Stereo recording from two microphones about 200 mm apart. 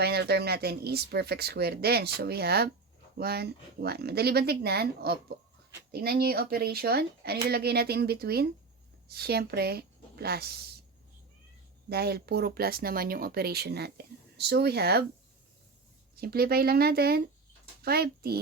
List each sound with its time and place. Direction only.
0.0 s a woman's voice: 55° right (ahead or behind)
11.9 s speech: 50° right (ahead or behind)
16.2 s speech: 50° right (ahead or behind)